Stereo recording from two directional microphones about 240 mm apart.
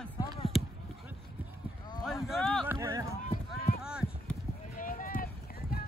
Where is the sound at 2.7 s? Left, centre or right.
Centre.